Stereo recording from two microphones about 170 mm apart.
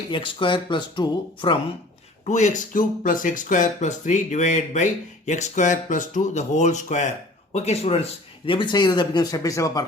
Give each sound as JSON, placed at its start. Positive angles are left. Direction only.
{"t": 0.1, "sound": "speech", "side_deg": 30}
{"t": 2.2, "sound": "speech", "side_deg": 45}